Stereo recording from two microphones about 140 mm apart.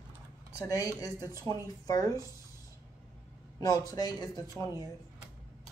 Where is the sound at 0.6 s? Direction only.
25° left (ahead or behind).